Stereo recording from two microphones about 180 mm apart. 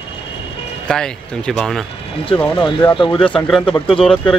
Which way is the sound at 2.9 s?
30° left (ahead or behind).